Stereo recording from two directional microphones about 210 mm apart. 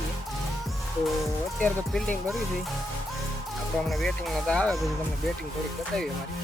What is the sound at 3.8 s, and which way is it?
Speech, centre (ahead or behind).